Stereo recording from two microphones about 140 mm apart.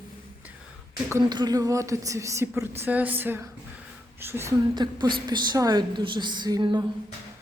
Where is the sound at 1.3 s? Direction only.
30° right (ahead or behind).